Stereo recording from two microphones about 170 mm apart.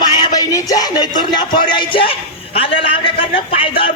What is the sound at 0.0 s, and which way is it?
A man's voice, 25° left (ahead or behind).